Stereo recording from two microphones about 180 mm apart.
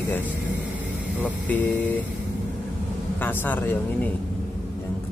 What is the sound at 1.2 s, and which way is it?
Speech, 10° left (ahead or behind).